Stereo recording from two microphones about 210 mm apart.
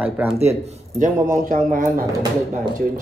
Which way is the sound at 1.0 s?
35° right (ahead or behind).